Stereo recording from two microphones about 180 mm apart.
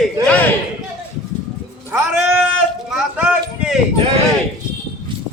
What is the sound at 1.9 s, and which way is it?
Speech, 10° right (ahead or behind).